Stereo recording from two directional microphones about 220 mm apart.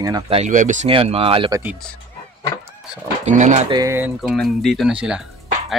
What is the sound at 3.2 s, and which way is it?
Speech, 35° right (ahead or behind).